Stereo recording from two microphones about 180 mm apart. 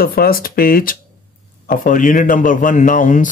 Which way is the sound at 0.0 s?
55° left (ahead or behind).